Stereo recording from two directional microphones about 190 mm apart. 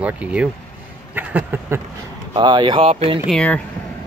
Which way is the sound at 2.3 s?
25° right (ahead or behind).